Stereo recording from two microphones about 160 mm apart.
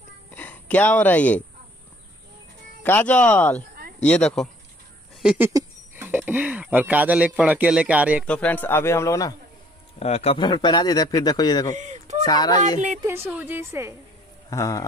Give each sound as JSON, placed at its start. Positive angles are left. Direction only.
{"t": 0.3, "sound": "speech", "side_deg": 10}
{"t": 2.8, "sound": "a man's voice", "side_deg": 10}
{"t": 5.2, "sound": "a sound", "side_deg": -5}
{"t": 5.9, "sound": "speech", "side_deg": -10}
{"t": 8.3, "sound": "a man's voice", "side_deg": 10}
{"t": 9.9, "sound": "a man's voice", "side_deg": 40}
{"t": 10.4, "sound": "speech", "side_deg": 25}
{"t": 11.7, "sound": "a sound", "side_deg": -45}
{"t": 12.3, "sound": "speech", "side_deg": 25}
{"t": 13.0, "sound": "speech", "side_deg": -15}
{"t": 14.5, "sound": "speech", "side_deg": 20}